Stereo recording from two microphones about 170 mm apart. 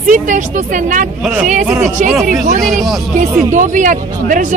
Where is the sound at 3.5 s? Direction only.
50° right (ahead or behind).